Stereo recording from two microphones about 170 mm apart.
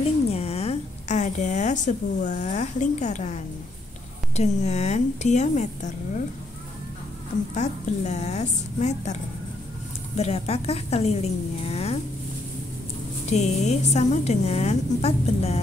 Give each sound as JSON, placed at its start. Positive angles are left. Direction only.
{"t": 0.3, "sound": "a woman's voice", "side_deg": 35}
{"t": 4.4, "sound": "a woman's voice", "side_deg": 40}
{"t": 7.5, "sound": "a woman's voice", "side_deg": 45}
{"t": 13.3, "sound": "a woman's voice", "side_deg": 40}